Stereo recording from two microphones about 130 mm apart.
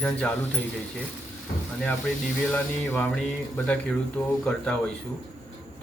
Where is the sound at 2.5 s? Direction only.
15° left (ahead or behind).